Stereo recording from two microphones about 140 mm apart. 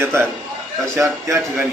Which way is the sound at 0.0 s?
15° right (ahead or behind).